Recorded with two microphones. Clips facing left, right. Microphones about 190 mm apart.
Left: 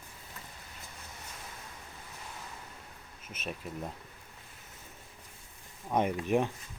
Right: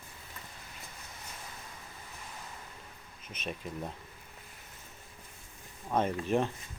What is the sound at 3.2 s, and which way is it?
Speech, 5° left (ahead or behind).